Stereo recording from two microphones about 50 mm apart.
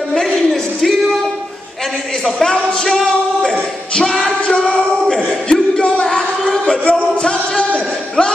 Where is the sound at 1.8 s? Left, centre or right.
Centre.